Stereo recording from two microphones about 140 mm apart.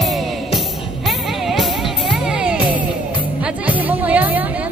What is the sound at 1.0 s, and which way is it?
Music, centre (ahead or behind).